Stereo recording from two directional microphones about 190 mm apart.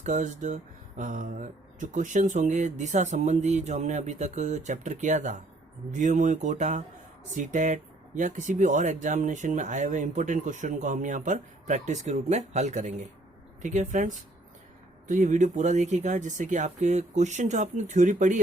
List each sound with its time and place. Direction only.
0.0 s speech: 40° right (ahead or behind)